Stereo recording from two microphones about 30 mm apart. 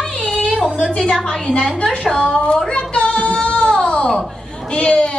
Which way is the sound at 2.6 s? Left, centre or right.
Left.